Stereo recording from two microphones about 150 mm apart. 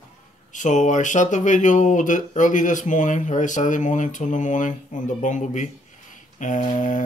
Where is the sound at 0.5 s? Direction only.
55° left (ahead or behind).